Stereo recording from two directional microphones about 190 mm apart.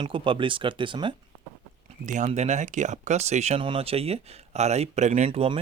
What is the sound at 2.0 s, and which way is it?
Speech, 40° right (ahead or behind).